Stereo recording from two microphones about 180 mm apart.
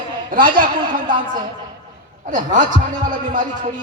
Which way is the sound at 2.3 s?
45° right (ahead or behind).